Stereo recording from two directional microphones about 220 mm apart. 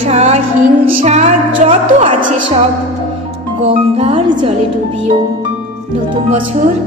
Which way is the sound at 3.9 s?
25° right (ahead or behind).